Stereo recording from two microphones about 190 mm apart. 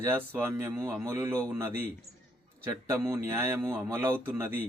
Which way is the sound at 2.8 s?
15° right (ahead or behind).